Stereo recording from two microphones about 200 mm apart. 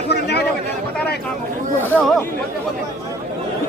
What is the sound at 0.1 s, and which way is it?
Chatter, 55° left (ahead or behind).